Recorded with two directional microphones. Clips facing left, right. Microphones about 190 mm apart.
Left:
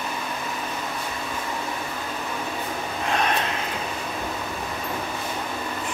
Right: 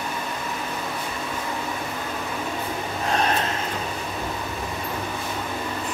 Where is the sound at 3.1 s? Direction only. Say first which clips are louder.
Right 1 dB; 35° right (ahead or behind).